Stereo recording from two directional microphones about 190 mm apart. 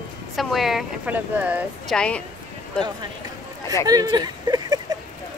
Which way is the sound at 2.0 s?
5° left (ahead or behind).